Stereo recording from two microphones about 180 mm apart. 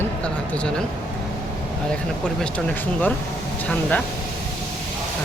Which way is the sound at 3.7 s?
5° left (ahead or behind).